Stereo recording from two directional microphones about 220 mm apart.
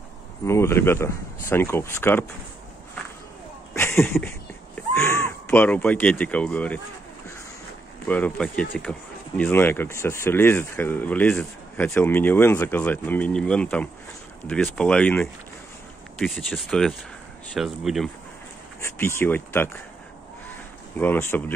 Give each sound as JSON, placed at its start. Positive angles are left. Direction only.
{"t": 0.5, "sound": "speech", "side_deg": 10}
{"t": 3.7, "sound": "a sound", "side_deg": 10}
{"t": 4.7, "sound": "speech", "side_deg": 10}
{"t": 8.1, "sound": "speech", "side_deg": 5}
{"t": 18.8, "sound": "speech", "side_deg": 10}
{"t": 21.0, "sound": "speech", "side_deg": 10}